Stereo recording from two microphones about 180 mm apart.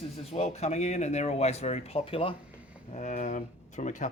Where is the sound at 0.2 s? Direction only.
35° left (ahead or behind).